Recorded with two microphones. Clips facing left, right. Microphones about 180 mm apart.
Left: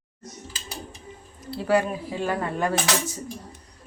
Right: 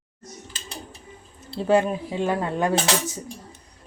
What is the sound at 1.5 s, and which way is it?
Speech, 25° right (ahead or behind).